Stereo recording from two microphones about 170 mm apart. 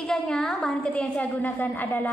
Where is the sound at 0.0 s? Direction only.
Centre (ahead or behind).